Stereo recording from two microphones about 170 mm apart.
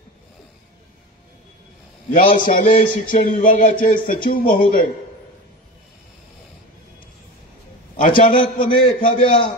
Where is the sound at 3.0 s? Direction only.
50° left (ahead or behind).